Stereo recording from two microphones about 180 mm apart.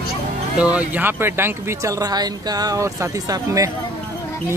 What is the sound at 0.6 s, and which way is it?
Speech, 10° right (ahead or behind).